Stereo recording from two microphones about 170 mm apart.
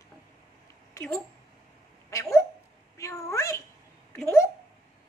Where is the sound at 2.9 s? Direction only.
20° left (ahead or behind).